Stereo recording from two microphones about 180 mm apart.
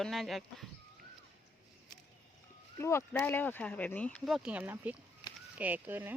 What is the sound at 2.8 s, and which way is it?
Speech, 15° left (ahead or behind).